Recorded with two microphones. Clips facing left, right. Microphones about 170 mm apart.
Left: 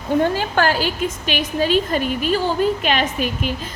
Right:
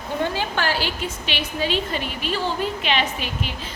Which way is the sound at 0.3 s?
50° left (ahead or behind).